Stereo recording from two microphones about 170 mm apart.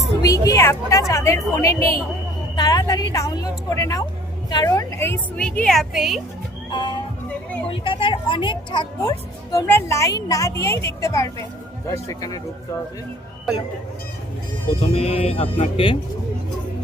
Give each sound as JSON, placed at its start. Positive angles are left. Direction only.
{"t": 0.2, "sound": "a woman's voice", "side_deg": 20}
{"t": 6.7, "sound": "music", "side_deg": 25}
{"t": 7.7, "sound": "speech", "side_deg": 30}
{"t": 14.8, "sound": "speech", "side_deg": 35}